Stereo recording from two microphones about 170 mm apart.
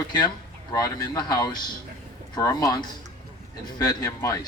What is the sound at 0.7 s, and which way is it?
A man's voice, 20° left (ahead or behind).